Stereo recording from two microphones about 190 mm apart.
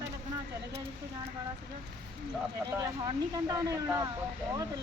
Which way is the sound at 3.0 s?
20° right (ahead or behind).